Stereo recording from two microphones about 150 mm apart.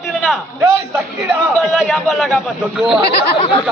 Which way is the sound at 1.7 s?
Centre (ahead or behind).